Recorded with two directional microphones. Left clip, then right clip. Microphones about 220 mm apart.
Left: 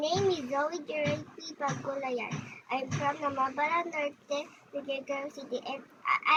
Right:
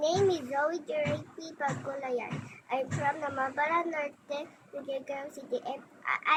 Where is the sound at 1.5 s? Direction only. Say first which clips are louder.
Even; 15° right (ahead or behind).